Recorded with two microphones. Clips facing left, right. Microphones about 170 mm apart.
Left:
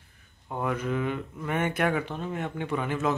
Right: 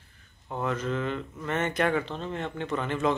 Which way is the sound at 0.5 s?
10° left (ahead or behind).